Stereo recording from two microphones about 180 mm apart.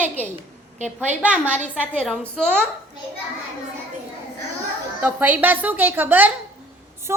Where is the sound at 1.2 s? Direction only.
5° right (ahead or behind).